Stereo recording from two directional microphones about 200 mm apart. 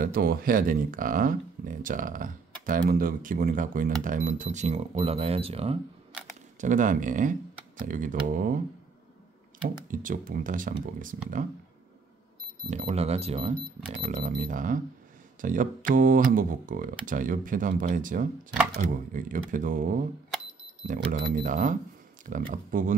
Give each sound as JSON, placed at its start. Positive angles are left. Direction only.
{"t": 0.0, "sound": "speech", "side_deg": -50}
{"t": 6.6, "sound": "speech", "side_deg": -40}
{"t": 9.8, "sound": "speech", "side_deg": -45}
{"t": 12.6, "sound": "speech", "side_deg": -35}